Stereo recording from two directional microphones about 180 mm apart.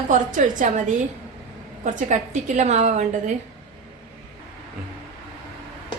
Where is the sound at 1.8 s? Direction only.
45° right (ahead or behind).